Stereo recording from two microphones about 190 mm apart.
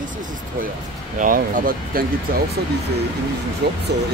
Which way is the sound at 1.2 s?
45° right (ahead or behind).